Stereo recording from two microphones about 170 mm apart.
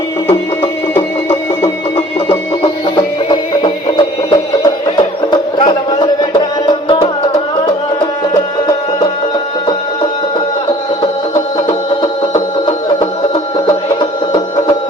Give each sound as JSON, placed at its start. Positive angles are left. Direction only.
{"t": 0.9, "sound": "music", "side_deg": 15}
{"t": 2.9, "sound": "music", "side_deg": 30}
{"t": 12.3, "sound": "music", "side_deg": 25}